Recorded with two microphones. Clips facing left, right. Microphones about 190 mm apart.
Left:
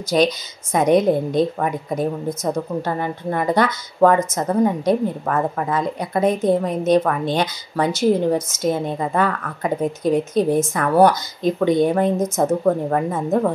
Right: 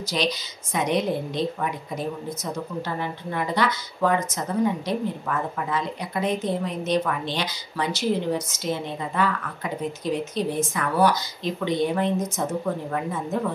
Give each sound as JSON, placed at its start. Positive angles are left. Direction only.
{"t": 0.1, "sound": "a woman's voice", "side_deg": 45}